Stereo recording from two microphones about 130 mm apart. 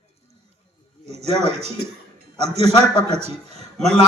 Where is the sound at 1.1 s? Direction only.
55° right (ahead or behind).